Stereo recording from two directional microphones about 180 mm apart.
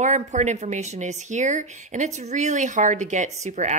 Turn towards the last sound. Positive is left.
turn(degrees=-40)  # may be behind; listen again after turning